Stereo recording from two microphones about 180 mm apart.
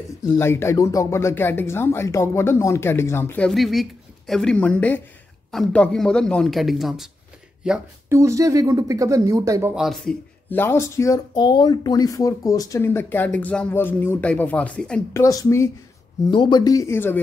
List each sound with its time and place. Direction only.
0.2 s speech: 15° left (ahead or behind)
8.1 s speech: 15° right (ahead or behind)
9.8 s speech: centre (ahead or behind)
15.1 s speech: 15° left (ahead or behind)